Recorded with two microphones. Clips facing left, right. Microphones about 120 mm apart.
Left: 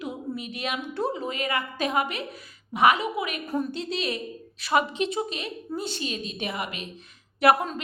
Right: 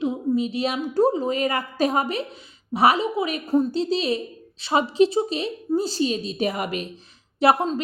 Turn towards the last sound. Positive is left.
turn(degrees=-25)  # may be behind; listen again after turning